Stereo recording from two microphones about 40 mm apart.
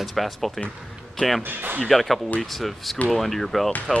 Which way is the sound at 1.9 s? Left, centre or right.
Centre.